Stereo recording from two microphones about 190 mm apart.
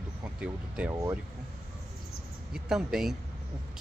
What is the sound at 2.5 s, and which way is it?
Speech, 5° right (ahead or behind).